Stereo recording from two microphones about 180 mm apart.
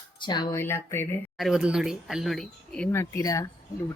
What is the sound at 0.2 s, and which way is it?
Speech, 25° left (ahead or behind).